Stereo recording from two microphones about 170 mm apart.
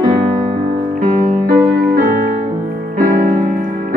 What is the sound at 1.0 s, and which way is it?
Music, 50° right (ahead or behind).